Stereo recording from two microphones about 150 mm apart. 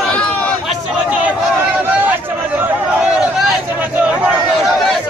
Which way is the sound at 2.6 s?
5° right (ahead or behind).